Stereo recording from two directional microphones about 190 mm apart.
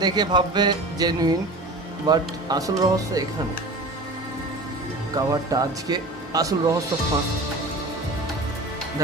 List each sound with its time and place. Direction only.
0.0 s speech: 20° right (ahead or behind)
5.1 s speech: 20° right (ahead or behind)